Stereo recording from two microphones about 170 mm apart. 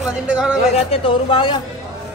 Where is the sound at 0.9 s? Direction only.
30° left (ahead or behind).